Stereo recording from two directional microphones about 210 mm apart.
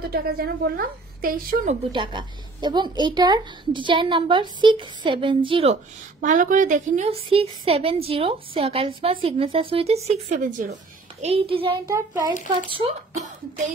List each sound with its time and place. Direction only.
0.1 s a woman's voice: 45° right (ahead or behind)
1.9 s a woman's voice: 20° right (ahead or behind)
6.2 s a woman's voice: 40° right (ahead or behind); by 12.4 s 15° right (ahead or behind)
12.6 s a woman's voice: 25° right (ahead or behind)